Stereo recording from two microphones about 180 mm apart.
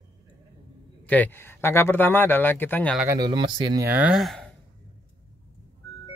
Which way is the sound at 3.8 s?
10° right (ahead or behind).